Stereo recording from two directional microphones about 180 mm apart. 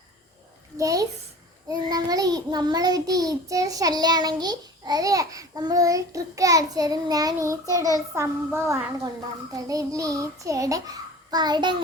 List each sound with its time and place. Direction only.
0.8 s child singing: 20° right (ahead or behind)
7.7 s a child's voice: 20° right (ahead or behind)
9.5 s child singing: 20° right (ahead or behind)